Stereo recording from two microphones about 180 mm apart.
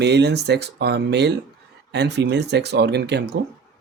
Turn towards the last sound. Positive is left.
turn(degrees=-70)  # may be behind; listen again after turning